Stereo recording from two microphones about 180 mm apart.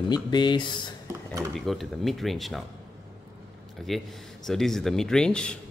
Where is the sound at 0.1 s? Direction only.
25° left (ahead or behind).